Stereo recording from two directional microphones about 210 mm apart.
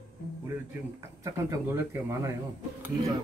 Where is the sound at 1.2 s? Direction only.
15° right (ahead or behind).